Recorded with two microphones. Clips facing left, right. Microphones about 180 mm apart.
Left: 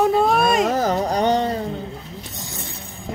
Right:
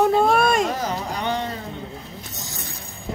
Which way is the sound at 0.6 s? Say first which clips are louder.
Left 6 dB; 45° left (ahead or behind).